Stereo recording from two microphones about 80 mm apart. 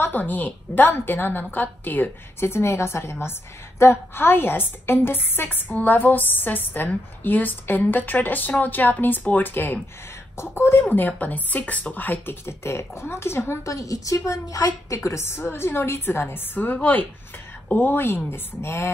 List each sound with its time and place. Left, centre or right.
0.0 s a woman's voice: left
13.7 s a woman's voice: left
15.0 s a woman's voice: left